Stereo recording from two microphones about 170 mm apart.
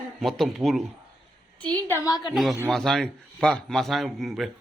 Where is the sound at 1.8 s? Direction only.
15° left (ahead or behind).